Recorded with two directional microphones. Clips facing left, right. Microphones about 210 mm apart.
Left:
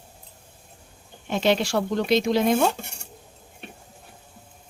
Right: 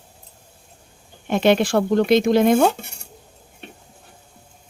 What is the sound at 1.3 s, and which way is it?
Speech, 55° right (ahead or behind).